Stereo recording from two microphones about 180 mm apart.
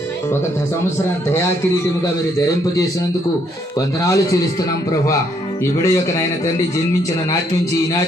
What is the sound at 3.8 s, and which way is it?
A man's voice, 20° left (ahead or behind).